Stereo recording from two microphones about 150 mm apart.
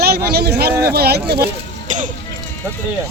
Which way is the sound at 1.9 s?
55° right (ahead or behind).